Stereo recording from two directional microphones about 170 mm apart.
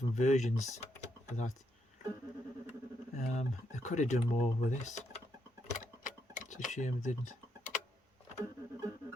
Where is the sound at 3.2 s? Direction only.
45° left (ahead or behind).